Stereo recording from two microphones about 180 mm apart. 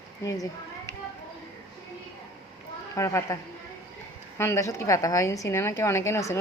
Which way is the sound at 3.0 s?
15° left (ahead or behind).